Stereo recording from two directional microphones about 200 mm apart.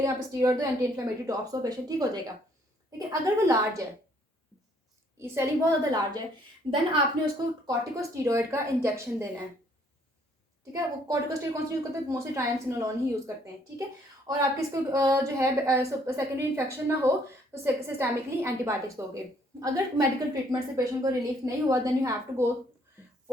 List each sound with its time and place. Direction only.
0.0 s a woman's voice: 15° right (ahead or behind)
5.2 s a woman's voice: 15° right (ahead or behind)
7.7 s a woman's voice: 15° right (ahead or behind)
10.7 s a woman's voice: 15° right (ahead or behind)